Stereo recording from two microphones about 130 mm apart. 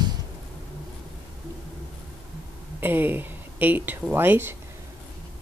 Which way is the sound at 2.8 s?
15° right (ahead or behind).